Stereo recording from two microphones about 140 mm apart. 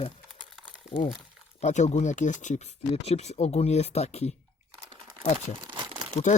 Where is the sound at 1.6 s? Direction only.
55° left (ahead or behind).